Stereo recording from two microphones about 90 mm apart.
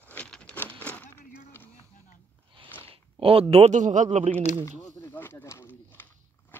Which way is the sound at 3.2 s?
90° right.